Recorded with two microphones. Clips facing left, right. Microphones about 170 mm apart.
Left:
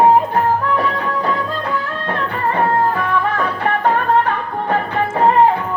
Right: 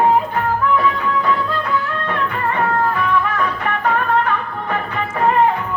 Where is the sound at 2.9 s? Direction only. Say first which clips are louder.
Even; 30° left (ahead or behind).